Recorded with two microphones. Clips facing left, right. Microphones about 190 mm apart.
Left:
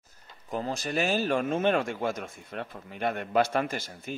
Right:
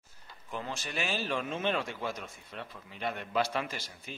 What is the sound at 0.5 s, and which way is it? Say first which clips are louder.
Speech: left 7 dB; 40° left (ahead or behind).